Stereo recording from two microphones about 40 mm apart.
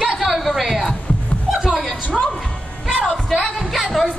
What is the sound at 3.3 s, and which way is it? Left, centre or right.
Speech, centre.